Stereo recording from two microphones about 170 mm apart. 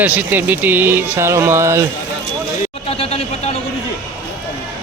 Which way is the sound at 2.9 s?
35° left (ahead or behind).